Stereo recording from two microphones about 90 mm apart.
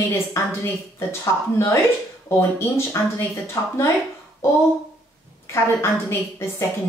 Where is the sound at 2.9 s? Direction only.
30° left (ahead or behind).